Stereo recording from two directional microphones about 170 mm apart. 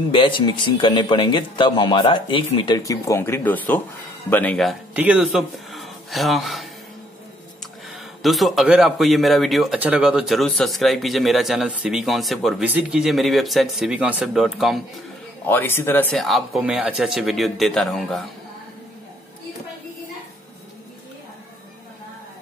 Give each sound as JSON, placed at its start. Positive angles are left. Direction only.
{"t": 0.1, "sound": "speech", "side_deg": 30}
{"t": 8.2, "sound": "a man's voice", "side_deg": 0}
{"t": 15.4, "sound": "a man's voice", "side_deg": 10}